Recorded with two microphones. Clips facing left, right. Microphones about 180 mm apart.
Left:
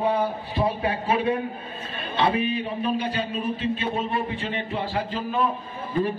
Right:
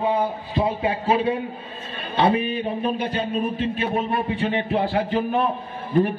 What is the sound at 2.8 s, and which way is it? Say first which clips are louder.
A man's voice: right 2 dB; 50° right (ahead or behind).